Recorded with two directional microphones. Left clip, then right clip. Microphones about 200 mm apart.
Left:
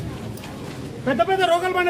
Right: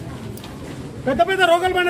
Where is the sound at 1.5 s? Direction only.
50° right (ahead or behind).